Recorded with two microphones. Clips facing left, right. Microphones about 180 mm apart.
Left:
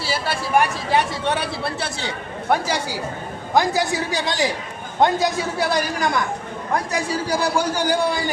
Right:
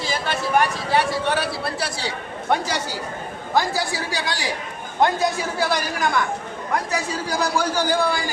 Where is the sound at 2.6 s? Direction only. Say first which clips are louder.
Left 2 dB; 10° left (ahead or behind).